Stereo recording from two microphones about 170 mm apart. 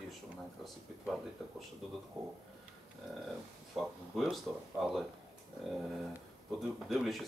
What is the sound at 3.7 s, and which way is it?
Speech, centre (ahead or behind).